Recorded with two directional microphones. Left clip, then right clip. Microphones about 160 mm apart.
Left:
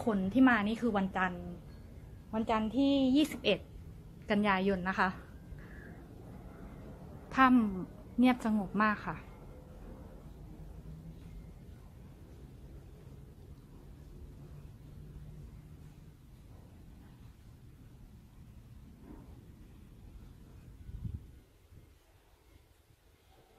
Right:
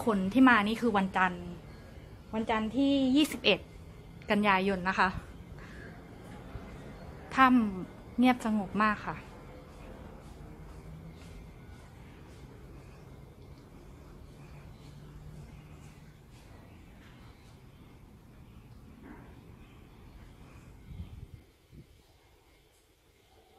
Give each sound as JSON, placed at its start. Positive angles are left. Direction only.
{"t": 0.0, "sound": "a woman's voice", "side_deg": 0}
{"t": 2.3, "sound": "a woman's voice", "side_deg": 20}
{"t": 3.2, "sound": "a woman's voice", "side_deg": -5}
{"t": 4.3, "sound": "a woman's voice", "side_deg": 5}
{"t": 7.2, "sound": "a woman's voice", "side_deg": 10}